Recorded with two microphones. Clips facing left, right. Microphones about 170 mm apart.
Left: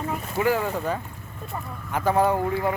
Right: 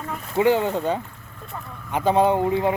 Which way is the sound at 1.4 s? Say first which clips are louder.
Left 2 dB; 5° left (ahead or behind).